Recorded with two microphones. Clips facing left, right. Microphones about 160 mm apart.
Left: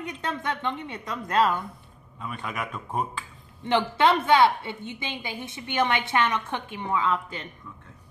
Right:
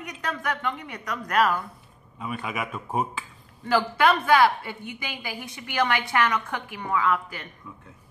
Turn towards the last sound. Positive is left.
turn(degrees=25)  # may be behind; listen again after turning